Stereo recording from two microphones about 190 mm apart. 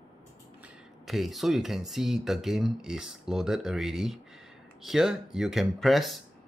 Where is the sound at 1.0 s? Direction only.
Centre (ahead or behind).